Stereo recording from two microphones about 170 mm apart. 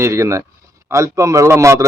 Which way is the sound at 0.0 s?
15° right (ahead or behind).